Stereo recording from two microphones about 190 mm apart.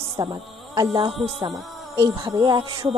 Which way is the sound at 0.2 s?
20° right (ahead or behind).